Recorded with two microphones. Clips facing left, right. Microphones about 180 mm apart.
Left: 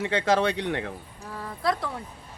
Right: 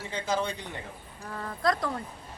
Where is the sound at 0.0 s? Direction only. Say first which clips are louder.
Left 7 dB; 80° left.